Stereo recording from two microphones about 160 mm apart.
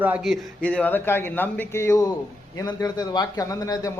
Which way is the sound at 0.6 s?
10° left (ahead or behind).